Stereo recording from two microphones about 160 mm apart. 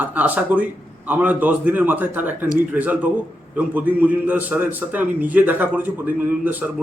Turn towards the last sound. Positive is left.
turn(degrees=-10)  # may be behind; listen again after turning